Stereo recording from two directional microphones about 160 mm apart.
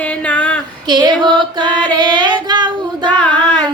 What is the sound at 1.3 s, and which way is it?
Music, 30° right (ahead or behind).